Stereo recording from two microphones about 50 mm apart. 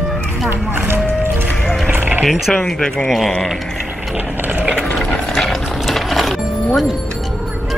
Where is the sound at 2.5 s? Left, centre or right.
Centre.